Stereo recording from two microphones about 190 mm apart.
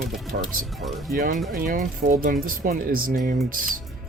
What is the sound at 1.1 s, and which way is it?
Speech, 50° right (ahead or behind).